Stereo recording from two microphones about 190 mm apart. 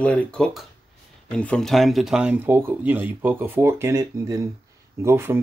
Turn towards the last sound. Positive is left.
turn(degrees=-15)  # may be behind; listen again after turning